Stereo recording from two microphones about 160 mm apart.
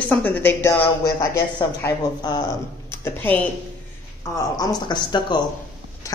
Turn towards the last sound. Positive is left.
turn(degrees=30)  # may be behind; listen again after turning